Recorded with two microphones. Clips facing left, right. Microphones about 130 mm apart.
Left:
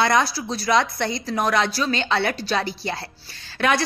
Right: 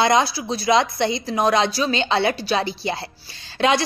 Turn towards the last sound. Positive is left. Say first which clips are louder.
# right 2 dB
turn(degrees=-20)  # may be behind; listen again after turning